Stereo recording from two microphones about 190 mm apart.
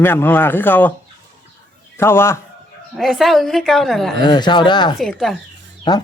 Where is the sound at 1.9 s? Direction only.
15° left (ahead or behind).